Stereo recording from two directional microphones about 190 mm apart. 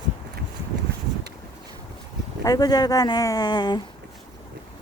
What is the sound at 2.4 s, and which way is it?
Speech, 20° left (ahead or behind).